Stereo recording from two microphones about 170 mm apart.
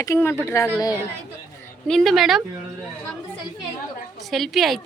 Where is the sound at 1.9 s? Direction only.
Centre (ahead or behind).